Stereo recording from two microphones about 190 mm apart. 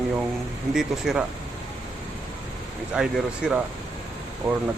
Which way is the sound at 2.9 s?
5° right (ahead or behind).